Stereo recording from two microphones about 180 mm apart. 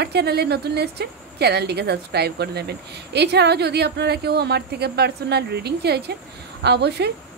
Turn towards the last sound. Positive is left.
turn(degrees=-65)  # may be behind; listen again after turning